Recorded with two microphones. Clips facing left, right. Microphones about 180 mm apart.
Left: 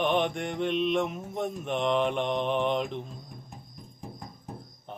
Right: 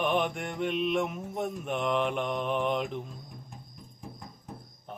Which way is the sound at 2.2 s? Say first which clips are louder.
Left 3 dB; 30° left (ahead or behind).